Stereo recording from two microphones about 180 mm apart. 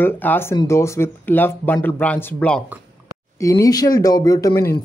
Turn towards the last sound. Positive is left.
turn(degrees=15)  # may be behind; listen again after turning